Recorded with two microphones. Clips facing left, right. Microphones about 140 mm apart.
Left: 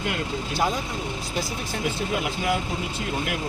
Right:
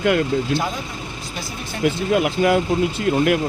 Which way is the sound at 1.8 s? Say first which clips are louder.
Right 10 dB; 85° right.